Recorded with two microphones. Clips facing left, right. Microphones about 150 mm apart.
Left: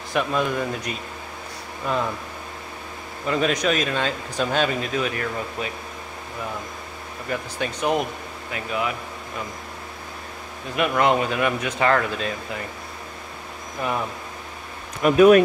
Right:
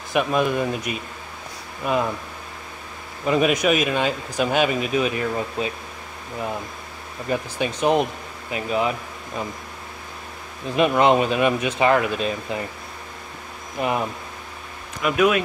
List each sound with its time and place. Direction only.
0.1 s speech: 15° right (ahead or behind)
3.3 s speech: 15° right (ahead or behind)
7.2 s speech: 20° right (ahead or behind)
10.8 s speech: 20° right (ahead or behind)
13.7 s speech: 15° right (ahead or behind)
15.0 s speech: 35° left (ahead or behind)